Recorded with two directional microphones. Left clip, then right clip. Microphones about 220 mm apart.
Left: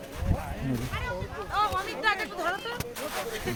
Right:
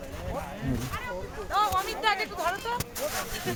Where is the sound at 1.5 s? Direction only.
50° right (ahead or behind).